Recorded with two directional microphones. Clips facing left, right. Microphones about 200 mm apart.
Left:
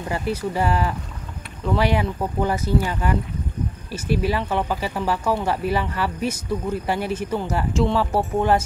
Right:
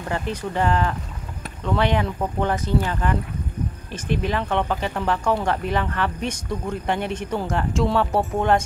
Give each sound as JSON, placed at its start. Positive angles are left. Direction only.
{"t": 0.1, "sound": "speech", "side_deg": 5}